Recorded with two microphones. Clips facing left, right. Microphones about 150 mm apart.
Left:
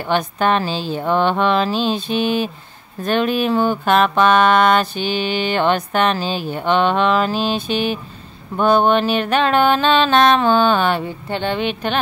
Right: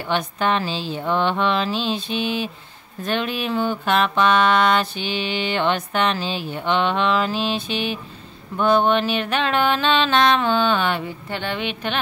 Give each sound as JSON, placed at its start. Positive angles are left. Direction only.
{"t": 0.1, "sound": "mantra", "side_deg": 45}
{"t": 8.5, "sound": "music", "side_deg": 40}